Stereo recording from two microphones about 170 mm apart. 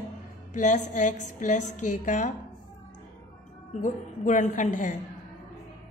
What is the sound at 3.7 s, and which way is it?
A woman's voice, 50° left (ahead or behind).